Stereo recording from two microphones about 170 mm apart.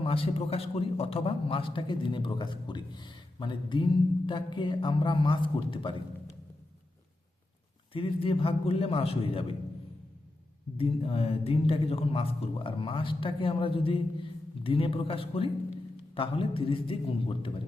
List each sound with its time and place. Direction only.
0.0 s a man's voice: 35° left (ahead or behind)
7.9 s speech: 30° left (ahead or behind)
10.8 s speech: 35° left (ahead or behind)